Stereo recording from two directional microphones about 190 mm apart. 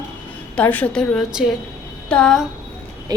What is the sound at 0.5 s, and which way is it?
A woman's voice, 10° left (ahead or behind).